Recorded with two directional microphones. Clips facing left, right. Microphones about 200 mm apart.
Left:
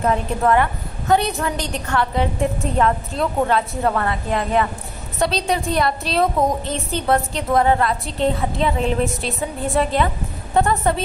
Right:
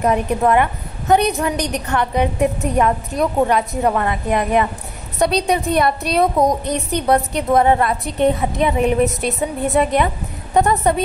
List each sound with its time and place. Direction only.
0.0 s a woman's voice: 15° right (ahead or behind)
5.8 s a woman's voice: 15° right (ahead or behind)